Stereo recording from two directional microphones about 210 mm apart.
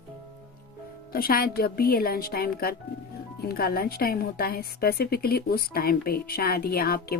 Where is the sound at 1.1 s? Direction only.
45° left (ahead or behind).